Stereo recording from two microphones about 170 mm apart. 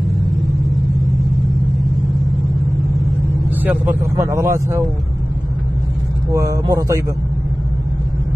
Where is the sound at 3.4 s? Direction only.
10° right (ahead or behind).